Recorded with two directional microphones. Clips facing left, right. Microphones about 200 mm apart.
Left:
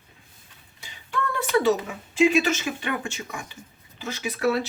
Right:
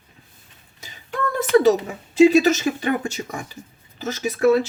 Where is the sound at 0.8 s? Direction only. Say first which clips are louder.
Right 3 dB; 40° right (ahead or behind).